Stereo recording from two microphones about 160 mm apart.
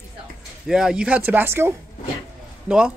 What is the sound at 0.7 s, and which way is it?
Speech, 5° right (ahead or behind).